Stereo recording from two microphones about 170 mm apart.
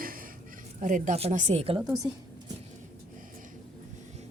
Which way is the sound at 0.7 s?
50° right (ahead or behind).